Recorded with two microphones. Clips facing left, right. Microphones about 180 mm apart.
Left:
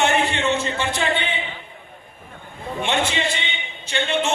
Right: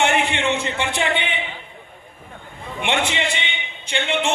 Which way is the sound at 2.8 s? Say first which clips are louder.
Even; 15° right (ahead or behind).